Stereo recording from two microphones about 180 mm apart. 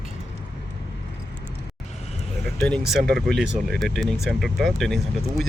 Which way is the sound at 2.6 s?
5° left (ahead or behind).